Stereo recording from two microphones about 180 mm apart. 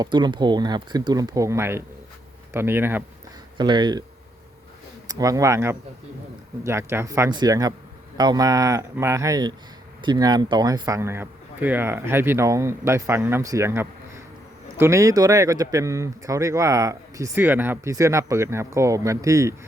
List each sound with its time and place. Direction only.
0.0 s speech: 25° right (ahead or behind)
3.6 s speech: 25° right (ahead or behind)
5.0 s speech: 20° right (ahead or behind)